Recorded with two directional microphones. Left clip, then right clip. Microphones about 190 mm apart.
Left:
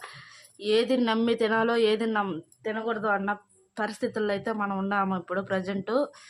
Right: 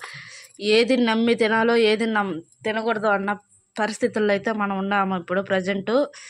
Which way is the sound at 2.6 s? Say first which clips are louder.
Right 6 dB; 30° right (ahead or behind).